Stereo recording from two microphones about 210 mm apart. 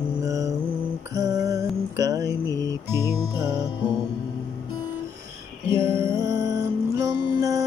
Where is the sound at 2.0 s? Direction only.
15° right (ahead or behind).